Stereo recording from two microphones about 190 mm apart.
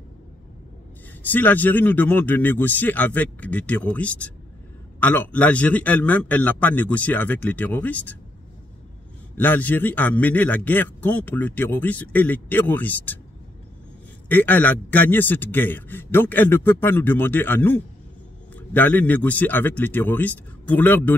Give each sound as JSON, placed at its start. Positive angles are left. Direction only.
{"t": 1.2, "sound": "speech", "side_deg": 10}
{"t": 9.4, "sound": "speech", "side_deg": 10}
{"t": 14.3, "sound": "speech", "side_deg": 10}